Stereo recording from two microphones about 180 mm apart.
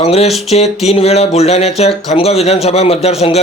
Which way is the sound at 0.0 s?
35° left (ahead or behind).